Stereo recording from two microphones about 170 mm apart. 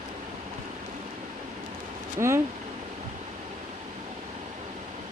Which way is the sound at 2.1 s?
15° right (ahead or behind).